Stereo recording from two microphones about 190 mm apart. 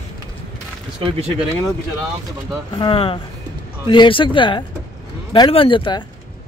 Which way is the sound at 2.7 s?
25° left (ahead or behind).